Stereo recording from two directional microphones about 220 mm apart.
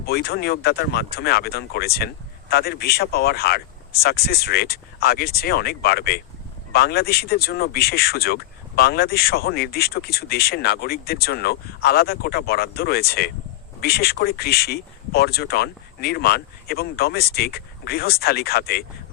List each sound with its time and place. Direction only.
0.0 s speech: 45° left (ahead or behind)